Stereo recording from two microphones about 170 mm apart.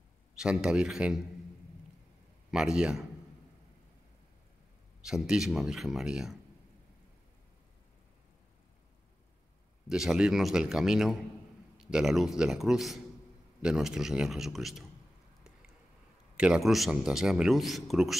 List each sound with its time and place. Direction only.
0.4 s a man's voice: 5° right (ahead or behind)
2.5 s a man's voice: 5° right (ahead or behind)
5.0 s a man's voice: 5° right (ahead or behind)
9.8 s a man's voice: 5° right (ahead or behind)
16.3 s a man's voice: 5° right (ahead or behind)